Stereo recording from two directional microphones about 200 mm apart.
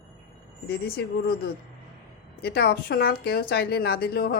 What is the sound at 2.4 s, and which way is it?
A woman's voice, 50° left (ahead or behind).